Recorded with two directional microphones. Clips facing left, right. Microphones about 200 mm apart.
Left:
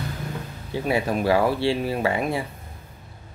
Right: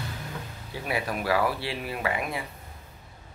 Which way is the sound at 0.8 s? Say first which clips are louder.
Left 7 dB; 25° left (ahead or behind).